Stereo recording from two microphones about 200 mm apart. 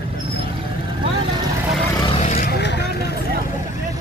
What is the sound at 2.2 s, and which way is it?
Vehicle, 40° left (ahead or behind).